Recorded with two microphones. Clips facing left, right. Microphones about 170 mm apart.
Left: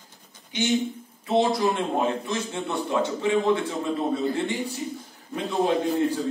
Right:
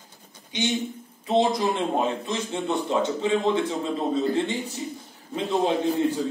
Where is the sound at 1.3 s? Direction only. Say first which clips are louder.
Even; 20° right (ahead or behind).